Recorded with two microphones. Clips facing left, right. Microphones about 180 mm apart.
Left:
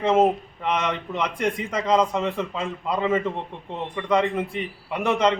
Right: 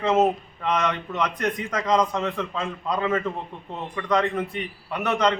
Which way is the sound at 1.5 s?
30° left (ahead or behind).